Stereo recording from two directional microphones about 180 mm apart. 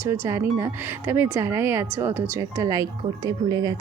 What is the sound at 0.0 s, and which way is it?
Speech, 10° right (ahead or behind).